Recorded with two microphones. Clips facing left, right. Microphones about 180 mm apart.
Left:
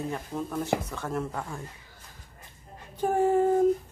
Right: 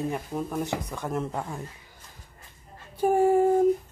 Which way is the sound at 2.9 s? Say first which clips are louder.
Right 3 dB; 10° right (ahead or behind).